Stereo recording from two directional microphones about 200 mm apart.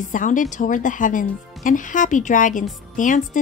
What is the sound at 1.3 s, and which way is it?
Speech, centre (ahead or behind).